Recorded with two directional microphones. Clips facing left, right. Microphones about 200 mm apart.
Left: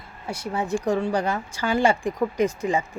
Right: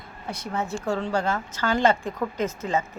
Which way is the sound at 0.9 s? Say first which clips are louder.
Left 1 dB; 15° left (ahead or behind).